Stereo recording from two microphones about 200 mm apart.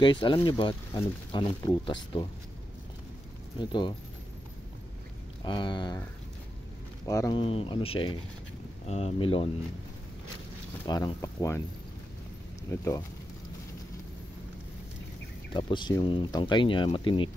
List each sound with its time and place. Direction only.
0.0 s speech: 25° left (ahead or behind)
3.5 s speech: 20° left (ahead or behind)
5.4 s speech: 25° left (ahead or behind)
7.1 s speech: 20° left (ahead or behind)
10.9 s speech: 15° left (ahead or behind)
12.7 s speech: 15° left (ahead or behind)
15.5 s speech: 25° left (ahead or behind)